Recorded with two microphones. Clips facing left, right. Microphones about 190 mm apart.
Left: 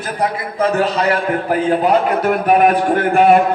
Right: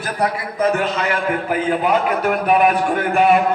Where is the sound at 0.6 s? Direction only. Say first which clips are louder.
Left 3 dB; 30° left (ahead or behind); by 3.4 s 55° left (ahead or behind).